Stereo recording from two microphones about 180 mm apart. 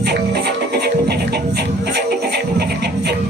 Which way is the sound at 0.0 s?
65° right (ahead or behind).